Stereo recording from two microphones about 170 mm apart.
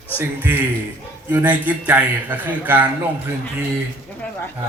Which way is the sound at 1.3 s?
10° right (ahead or behind).